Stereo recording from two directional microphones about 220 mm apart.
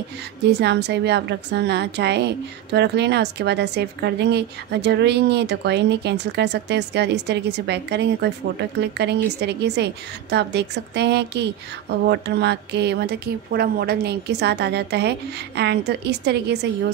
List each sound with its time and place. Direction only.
0.5 s a woman's voice: 50° right (ahead or behind)